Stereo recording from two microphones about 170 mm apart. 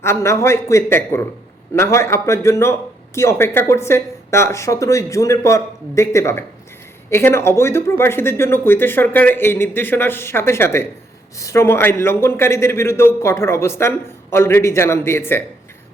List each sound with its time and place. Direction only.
0.0 s a man's voice: 15° left (ahead or behind)